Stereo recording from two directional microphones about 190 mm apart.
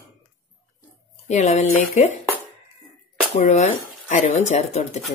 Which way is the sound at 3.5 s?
40° left (ahead or behind).